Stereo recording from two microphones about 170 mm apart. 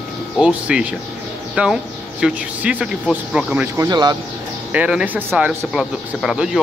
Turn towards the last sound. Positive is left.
turn(degrees=-5)  # may be behind; listen again after turning